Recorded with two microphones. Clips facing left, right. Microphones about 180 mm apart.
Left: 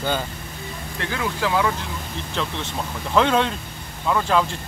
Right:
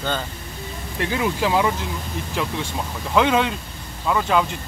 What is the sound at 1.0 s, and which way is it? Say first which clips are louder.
Speech: right 3 dB; 15° right (ahead or behind).